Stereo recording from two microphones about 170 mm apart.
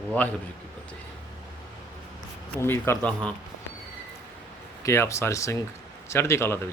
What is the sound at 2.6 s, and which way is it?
Speech, 15° left (ahead or behind).